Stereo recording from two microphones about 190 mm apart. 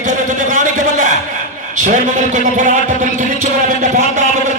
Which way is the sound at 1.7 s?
40° right (ahead or behind).